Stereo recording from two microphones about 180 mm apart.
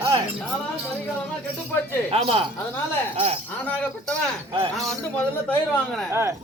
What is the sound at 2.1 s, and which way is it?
Speech, 30° right (ahead or behind).